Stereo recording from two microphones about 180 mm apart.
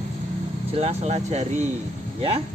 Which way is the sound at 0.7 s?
35° right (ahead or behind).